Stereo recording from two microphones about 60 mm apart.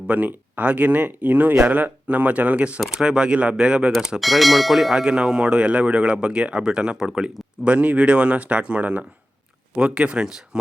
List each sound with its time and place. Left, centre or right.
0.1 s speech: right
2.8 s speech: centre
4.2 s bell: centre
5.0 s speech: centre